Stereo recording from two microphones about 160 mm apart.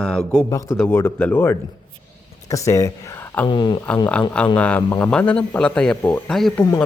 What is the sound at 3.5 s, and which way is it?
Speech, 30° left (ahead or behind).